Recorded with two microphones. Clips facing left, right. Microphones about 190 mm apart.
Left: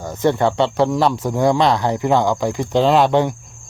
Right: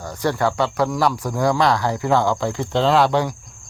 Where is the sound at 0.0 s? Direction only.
20° left (ahead or behind).